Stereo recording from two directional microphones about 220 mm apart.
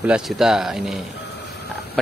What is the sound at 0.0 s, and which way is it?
Speech, 5° right (ahead or behind).